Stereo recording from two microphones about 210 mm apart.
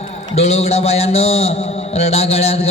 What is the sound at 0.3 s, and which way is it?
Mantra, 30° left (ahead or behind).